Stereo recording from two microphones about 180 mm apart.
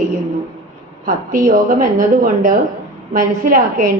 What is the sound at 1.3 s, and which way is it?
A woman's voice, 50° right (ahead or behind).